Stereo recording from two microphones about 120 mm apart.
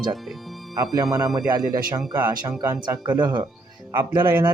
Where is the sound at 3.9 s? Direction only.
20° right (ahead or behind).